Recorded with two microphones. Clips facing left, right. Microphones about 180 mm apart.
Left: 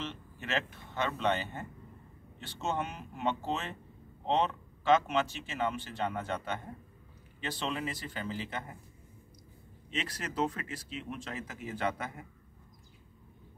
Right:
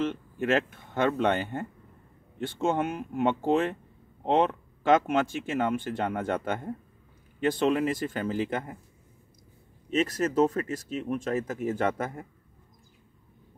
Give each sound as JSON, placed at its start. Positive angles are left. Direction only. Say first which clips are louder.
{"t": 0.0, "sound": "speech", "louder": "right 12 dB", "side_deg": -50}
{"t": 9.8, "sound": "speech", "louder": "right 12 dB", "side_deg": -45}